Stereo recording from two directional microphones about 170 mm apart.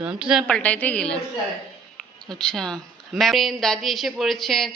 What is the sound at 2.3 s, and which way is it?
Speech, 5° left (ahead or behind).